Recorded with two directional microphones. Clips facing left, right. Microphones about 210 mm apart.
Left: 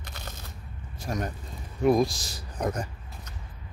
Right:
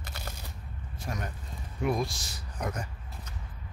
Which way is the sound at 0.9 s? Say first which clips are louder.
Left 6 dB; 40° left (ahead or behind).